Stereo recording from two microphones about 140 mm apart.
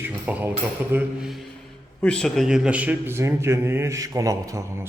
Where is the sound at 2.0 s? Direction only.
5° left (ahead or behind); by 4.6 s 25° right (ahead or behind).